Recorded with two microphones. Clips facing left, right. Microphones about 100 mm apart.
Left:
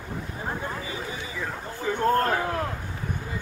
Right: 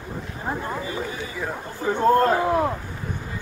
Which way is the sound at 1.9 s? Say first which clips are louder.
Right 5 dB; 15° right (ahead or behind).